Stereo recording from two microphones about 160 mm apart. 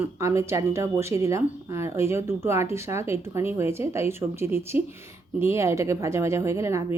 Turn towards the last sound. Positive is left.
turn(degrees=-15)  # may be behind; listen again after turning